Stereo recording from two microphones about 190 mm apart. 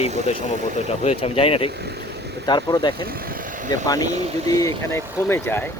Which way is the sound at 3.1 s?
50° right (ahead or behind).